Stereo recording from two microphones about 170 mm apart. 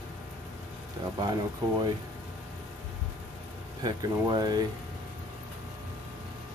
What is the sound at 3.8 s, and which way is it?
Speech, 25° right (ahead or behind).